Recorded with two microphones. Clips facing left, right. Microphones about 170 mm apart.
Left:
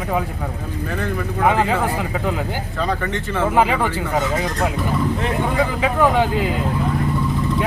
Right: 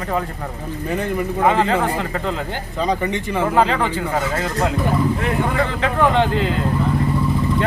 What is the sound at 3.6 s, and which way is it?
Speech, 10° left (ahead or behind).